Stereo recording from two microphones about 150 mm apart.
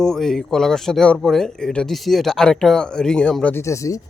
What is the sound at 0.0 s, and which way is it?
Speech, 5° left (ahead or behind).